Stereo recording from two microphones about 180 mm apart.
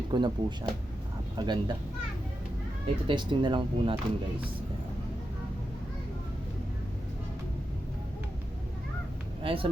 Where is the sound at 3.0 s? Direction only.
25° right (ahead or behind).